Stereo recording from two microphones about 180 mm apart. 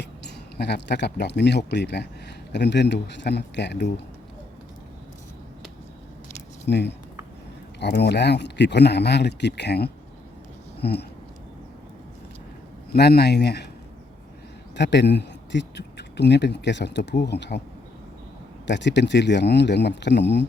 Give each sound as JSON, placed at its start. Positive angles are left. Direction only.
{"t": 0.0, "sound": "speech", "side_deg": 65}
{"t": 6.7, "sound": "speech", "side_deg": 70}
{"t": 12.9, "sound": "speech", "side_deg": 60}
{"t": 14.8, "sound": "speech", "side_deg": 70}
{"t": 18.6, "sound": "speech", "side_deg": 80}